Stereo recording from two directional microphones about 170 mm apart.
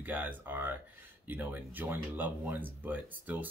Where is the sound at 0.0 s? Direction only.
10° right (ahead or behind).